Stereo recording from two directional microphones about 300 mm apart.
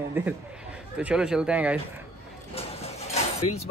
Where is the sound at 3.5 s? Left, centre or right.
Left.